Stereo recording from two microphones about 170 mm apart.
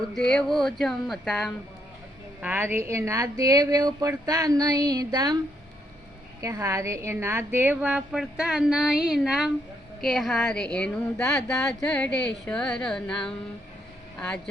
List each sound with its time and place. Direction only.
0.3 s music: 5° left (ahead or behind)
2.4 s a woman's voice: 10° right (ahead or behind)
6.4 s a woman's voice: 20° right (ahead or behind); by 9.5 s centre (ahead or behind)
10.0 s music: centre (ahead or behind)
11.7 s speech: 10° left (ahead or behind)
12.1 s speech: 90° left
12.5 s music: 5° left (ahead or behind)
14.2 s speech: 5° left (ahead or behind)